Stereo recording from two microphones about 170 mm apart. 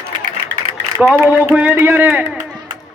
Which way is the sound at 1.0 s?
5° right (ahead or behind).